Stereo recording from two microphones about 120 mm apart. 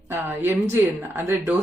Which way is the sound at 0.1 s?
20° right (ahead or behind).